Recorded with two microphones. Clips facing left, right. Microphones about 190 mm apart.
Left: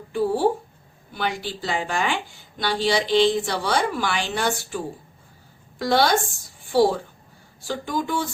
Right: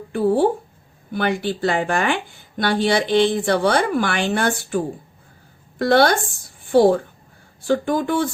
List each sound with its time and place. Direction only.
0.1 s a woman's voice: 55° right (ahead or behind)
5.8 s a woman's voice: 55° right (ahead or behind)